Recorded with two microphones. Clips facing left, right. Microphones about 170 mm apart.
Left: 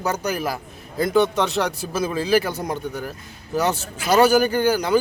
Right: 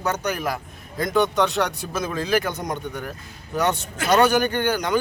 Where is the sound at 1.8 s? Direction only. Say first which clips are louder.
Left 3 dB; 30° left (ahead or behind).